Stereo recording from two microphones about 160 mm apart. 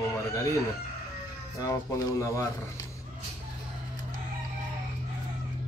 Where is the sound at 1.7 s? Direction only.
20° left (ahead or behind).